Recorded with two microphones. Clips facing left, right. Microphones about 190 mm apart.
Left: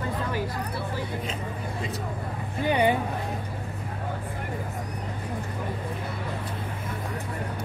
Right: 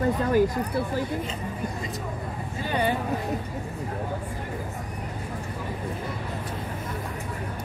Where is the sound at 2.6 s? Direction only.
15° left (ahead or behind).